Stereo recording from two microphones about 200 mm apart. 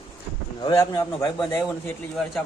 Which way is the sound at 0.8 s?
15° left (ahead or behind).